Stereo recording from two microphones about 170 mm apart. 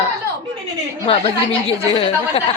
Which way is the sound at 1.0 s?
35° left (ahead or behind).